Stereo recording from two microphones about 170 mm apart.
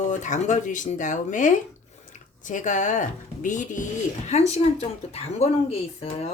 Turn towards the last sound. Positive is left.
turn(degrees=35)  # may be behind; listen again after turning